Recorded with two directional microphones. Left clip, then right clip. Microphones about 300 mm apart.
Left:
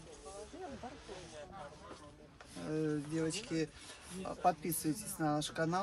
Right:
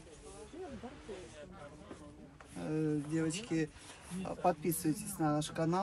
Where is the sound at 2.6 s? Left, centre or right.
Centre.